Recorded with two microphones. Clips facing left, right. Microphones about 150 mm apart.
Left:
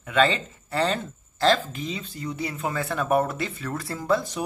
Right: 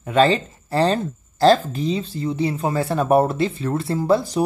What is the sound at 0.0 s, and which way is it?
Speech, 35° right (ahead or behind).